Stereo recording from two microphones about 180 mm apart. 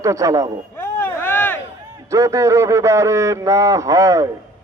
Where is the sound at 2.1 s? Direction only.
15° right (ahead or behind).